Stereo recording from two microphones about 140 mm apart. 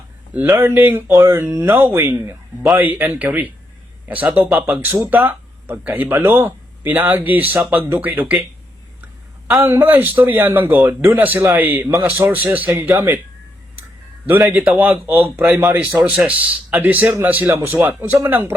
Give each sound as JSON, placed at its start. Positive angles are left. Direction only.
{"t": 0.3, "sound": "speech", "side_deg": -15}
{"t": 1.1, "sound": "speech", "side_deg": -25}
{"t": 9.6, "sound": "speech", "side_deg": -15}
{"t": 14.4, "sound": "speech", "side_deg": -10}